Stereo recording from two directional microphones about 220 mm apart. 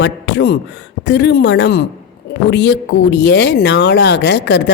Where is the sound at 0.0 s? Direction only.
50° left (ahead or behind).